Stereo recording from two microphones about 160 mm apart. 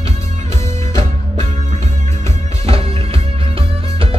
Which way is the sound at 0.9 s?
20° left (ahead or behind).